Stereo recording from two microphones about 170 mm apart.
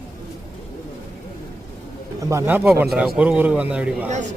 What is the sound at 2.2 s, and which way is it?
A man's voice, 15° right (ahead or behind).